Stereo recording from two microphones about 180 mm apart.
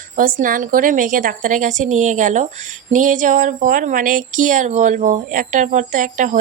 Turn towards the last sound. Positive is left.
turn(degrees=-45)  # may be behind; listen again after turning